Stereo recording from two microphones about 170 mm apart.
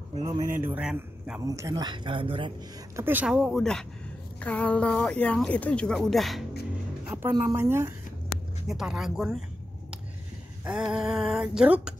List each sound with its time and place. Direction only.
0.6 s a woman's voice: 10° right (ahead or behind)
1.4 s speech: 20° right (ahead or behind)
3.0 s speech: 10° right (ahead or behind)
7.1 s a woman's voice: 15° right (ahead or behind)
8.6 s speech: 5° right (ahead or behind)
10.6 s speech: 5° right (ahead or behind)